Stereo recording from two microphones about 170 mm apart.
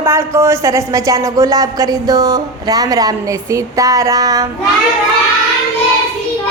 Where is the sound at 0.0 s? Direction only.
15° right (ahead or behind).